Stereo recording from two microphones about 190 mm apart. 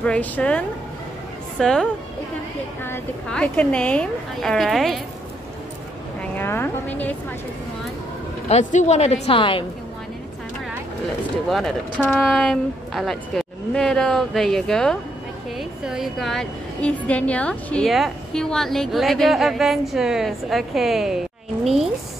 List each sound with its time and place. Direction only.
0.0 s a woman's voice: 5° left (ahead or behind)
6.3 s a woman's voice: 10° left (ahead or behind)
8.5 s a woman's voice: 35° left (ahead or behind)
11.4 s a woman's voice: centre (ahead or behind)